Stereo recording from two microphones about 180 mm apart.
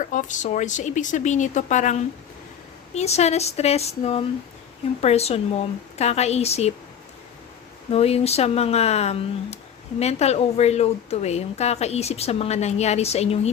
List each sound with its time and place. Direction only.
0.0 s speech: 45° left (ahead or behind)
7.9 s speech: 35° left (ahead or behind)